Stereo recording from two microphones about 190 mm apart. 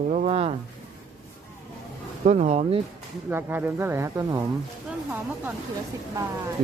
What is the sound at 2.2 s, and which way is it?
Speech, 35° right (ahead or behind).